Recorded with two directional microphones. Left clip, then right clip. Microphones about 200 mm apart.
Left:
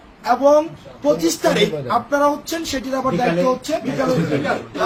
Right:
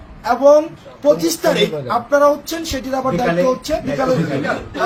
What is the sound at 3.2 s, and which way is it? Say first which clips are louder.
Speech: right 2 dB; 15° left (ahead or behind).